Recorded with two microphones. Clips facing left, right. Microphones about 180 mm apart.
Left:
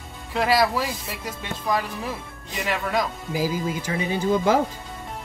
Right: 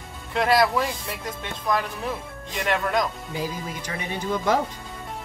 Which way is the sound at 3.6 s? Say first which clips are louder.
Left 6 dB; 25° left (ahead or behind).